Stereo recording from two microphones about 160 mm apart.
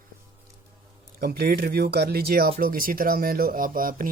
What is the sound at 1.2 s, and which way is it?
Speech, 70° right (ahead or behind).